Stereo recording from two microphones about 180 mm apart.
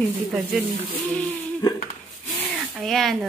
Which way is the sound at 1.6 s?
25° left (ahead or behind).